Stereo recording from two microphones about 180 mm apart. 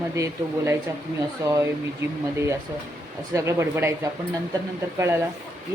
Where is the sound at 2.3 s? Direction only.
15° right (ahead or behind).